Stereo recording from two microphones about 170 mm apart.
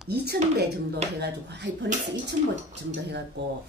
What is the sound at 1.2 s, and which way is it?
Speech, 85° right.